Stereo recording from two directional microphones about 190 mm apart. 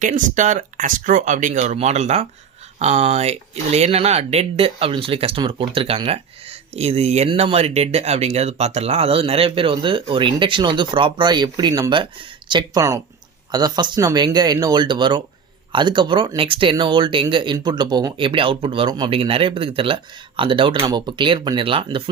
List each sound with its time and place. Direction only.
0.0 s speech: 40° right (ahead or behind); by 22.1 s 25° right (ahead or behind)